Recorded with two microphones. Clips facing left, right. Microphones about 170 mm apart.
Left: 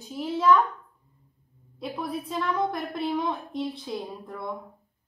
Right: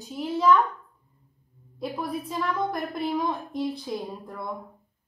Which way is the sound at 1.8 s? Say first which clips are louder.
Right 1 dB; centre (ahead or behind).